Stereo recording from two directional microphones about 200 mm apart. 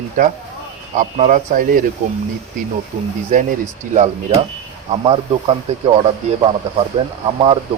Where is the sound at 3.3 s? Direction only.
40° right (ahead or behind).